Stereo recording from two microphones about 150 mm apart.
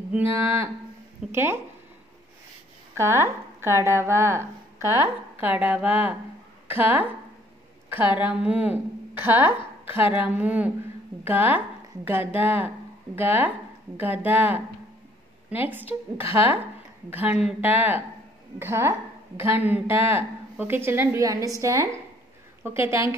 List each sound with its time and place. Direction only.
0.4 s a woman's voice: 15° right (ahead or behind)
2.9 s a woman's voice: 15° right (ahead or behind)
15.7 s a woman's voice: 15° right (ahead or behind)